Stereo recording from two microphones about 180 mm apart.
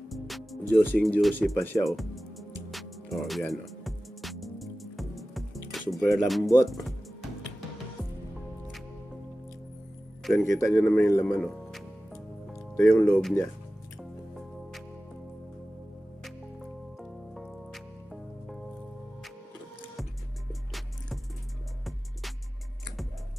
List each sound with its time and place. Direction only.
0.1 s music: centre (ahead or behind)
0.8 s a man's voice: 10° left (ahead or behind)
1.9 s music: centre (ahead or behind)
10.3 s a man's voice: 15° left (ahead or behind)
12.9 s a man's voice: 10° left (ahead or behind)
17.0 s music: centre (ahead or behind)